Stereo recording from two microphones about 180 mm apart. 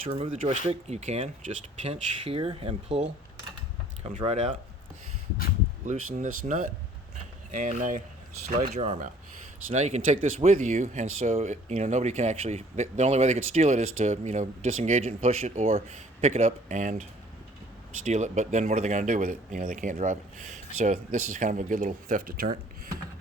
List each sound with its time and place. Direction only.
0.1 s speech: 30° right (ahead or behind)
4.2 s speech: 35° right (ahead or behind)
5.8 s speech: 45° right (ahead or behind)